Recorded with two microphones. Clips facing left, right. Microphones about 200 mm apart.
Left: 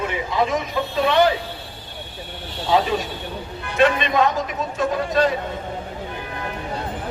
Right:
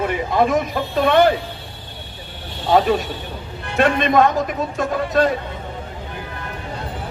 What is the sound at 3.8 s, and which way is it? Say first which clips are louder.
A man's voice: right 2 dB; 50° right (ahead or behind).